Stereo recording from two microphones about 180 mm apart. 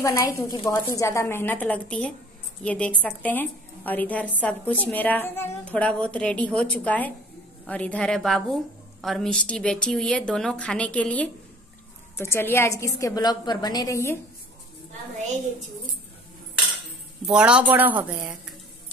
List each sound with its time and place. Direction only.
0.0 s a woman's voice: 15° left (ahead or behind)
17.3 s speech: 5° right (ahead or behind)